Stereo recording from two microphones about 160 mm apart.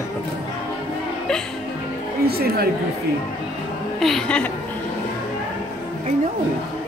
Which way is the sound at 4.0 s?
Centre (ahead or behind).